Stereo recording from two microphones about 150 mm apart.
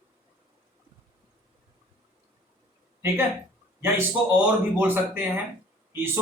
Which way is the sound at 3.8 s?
15° right (ahead or behind).